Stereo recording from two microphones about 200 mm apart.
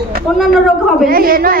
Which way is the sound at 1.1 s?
45° right (ahead or behind).